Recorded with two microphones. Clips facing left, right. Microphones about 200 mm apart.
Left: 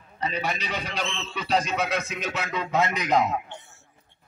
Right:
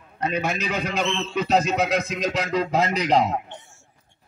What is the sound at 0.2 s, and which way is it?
Speech, 50° right (ahead or behind).